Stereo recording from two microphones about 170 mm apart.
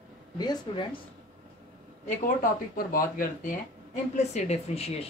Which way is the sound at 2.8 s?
55° left (ahead or behind).